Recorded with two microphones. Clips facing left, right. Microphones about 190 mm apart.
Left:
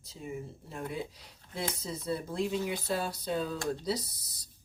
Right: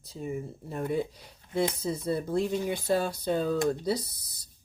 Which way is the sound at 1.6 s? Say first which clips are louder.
Right 8 dB; 55° right (ahead or behind).